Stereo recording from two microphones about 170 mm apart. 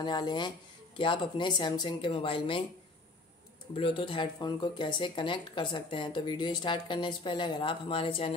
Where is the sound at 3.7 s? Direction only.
30° left (ahead or behind).